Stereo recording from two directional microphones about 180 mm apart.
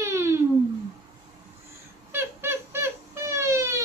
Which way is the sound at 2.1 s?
15° right (ahead or behind).